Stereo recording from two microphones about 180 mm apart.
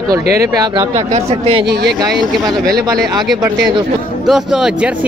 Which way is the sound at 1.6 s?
65° right (ahead or behind).